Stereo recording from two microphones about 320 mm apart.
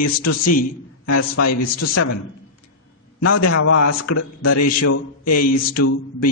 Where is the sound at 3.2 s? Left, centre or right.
Left.